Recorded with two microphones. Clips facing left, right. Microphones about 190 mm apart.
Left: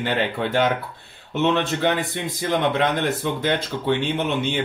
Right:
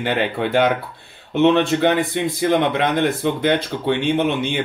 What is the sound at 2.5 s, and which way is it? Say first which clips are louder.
Speech: right 2 dB; 65° right (ahead or behind).